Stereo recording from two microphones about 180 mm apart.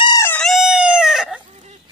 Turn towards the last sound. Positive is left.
turn(degrees=-5)  # may be behind; listen again after turning